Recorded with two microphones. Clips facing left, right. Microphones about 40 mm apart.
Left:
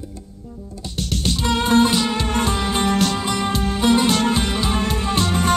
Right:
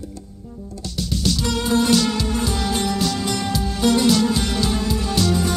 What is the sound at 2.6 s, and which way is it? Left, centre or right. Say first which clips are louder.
Music: left 3 dB; left.